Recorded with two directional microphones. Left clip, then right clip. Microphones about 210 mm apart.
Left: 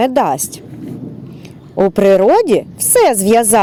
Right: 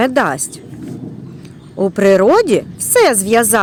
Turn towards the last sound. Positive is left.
turn(degrees=20)  # may be behind; listen again after turning